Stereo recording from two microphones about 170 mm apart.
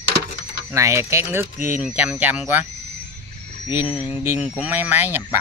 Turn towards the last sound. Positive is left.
turn(degrees=-10)  # may be behind; listen again after turning